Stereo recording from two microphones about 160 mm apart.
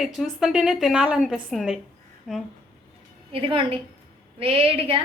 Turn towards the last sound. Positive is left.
turn(degrees=-35)  # may be behind; listen again after turning